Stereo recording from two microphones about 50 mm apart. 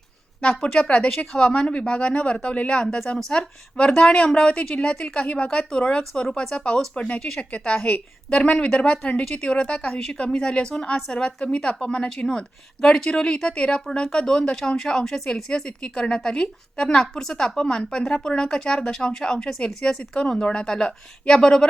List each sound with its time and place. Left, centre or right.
0.7 s speech: left